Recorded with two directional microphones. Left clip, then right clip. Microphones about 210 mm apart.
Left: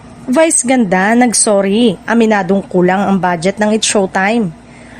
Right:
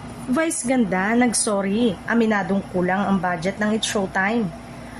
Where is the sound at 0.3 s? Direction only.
45° left (ahead or behind).